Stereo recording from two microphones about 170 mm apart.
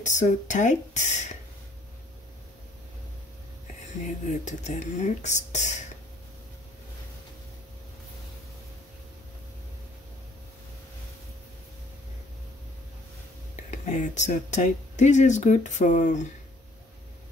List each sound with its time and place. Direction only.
0.0 s speech: 45° left (ahead or behind)
4.5 s speech: 45° left (ahead or behind)
13.7 s speech: 45° left (ahead or behind)